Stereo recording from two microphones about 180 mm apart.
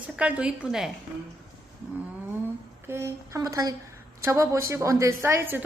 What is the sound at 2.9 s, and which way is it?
A woman's voice, 15° right (ahead or behind).